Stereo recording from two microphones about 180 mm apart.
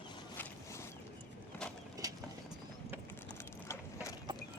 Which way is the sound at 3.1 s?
15° left (ahead or behind).